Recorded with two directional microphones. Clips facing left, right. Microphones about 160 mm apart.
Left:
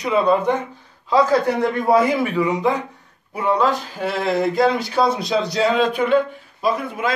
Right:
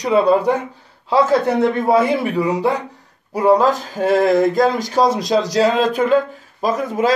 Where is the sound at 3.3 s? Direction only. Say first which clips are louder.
Right 5 dB; 40° right (ahead or behind).